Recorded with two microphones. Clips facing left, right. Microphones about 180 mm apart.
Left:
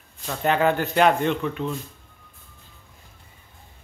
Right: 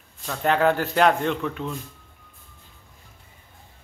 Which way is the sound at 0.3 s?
Centre (ahead or behind).